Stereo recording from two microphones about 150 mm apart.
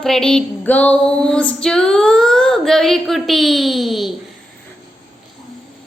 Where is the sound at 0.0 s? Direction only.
5° left (ahead or behind).